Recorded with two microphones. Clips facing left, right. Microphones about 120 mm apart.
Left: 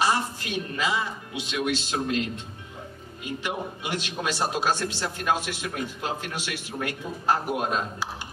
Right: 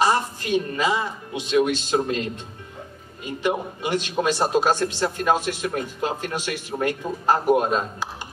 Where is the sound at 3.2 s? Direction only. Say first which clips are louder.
Right 6 dB; 45° right (ahead or behind).